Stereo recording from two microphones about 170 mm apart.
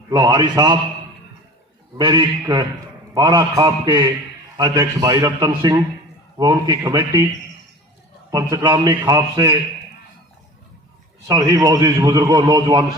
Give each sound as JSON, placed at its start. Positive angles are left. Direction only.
{"t": 0.1, "sound": "a man's voice", "side_deg": -25}
{"t": 2.0, "sound": "a man's voice", "side_deg": -25}
{"t": 8.3, "sound": "a man's voice", "side_deg": -25}
{"t": 11.3, "sound": "a man's voice", "side_deg": -25}